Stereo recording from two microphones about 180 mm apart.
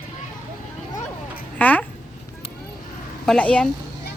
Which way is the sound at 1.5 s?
10° left (ahead or behind).